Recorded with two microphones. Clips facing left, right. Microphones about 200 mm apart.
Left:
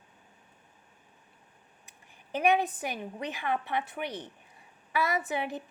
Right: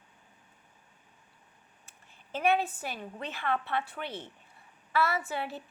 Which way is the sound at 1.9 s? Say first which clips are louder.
Left 3 dB; 15° left (ahead or behind).